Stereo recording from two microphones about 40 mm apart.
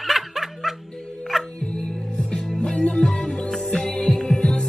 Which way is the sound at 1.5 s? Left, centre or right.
Left.